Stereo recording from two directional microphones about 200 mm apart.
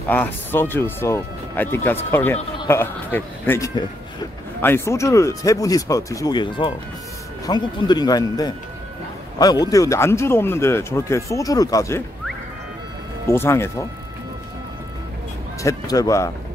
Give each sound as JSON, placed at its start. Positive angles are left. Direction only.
{"t": 0.1, "sound": "speech", "side_deg": 10}
{"t": 13.3, "sound": "speech", "side_deg": 10}
{"t": 15.6, "sound": "speech", "side_deg": 15}